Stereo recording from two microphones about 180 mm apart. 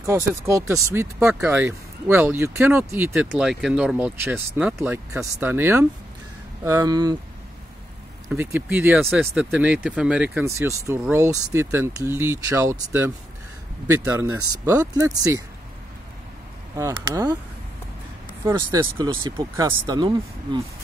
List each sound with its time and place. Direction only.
0.0 s speech: 15° right (ahead or behind)
3.3 s speech: 5° right (ahead or behind); by 7.2 s 20° right (ahead or behind)
8.3 s speech: 10° right (ahead or behind)
14.1 s speech: 20° right (ahead or behind)
16.7 s speech: 15° right (ahead or behind)
18.5 s speech: 20° right (ahead or behind)